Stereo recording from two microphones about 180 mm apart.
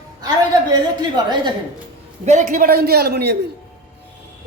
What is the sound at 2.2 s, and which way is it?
Speech, 45° right (ahead or behind).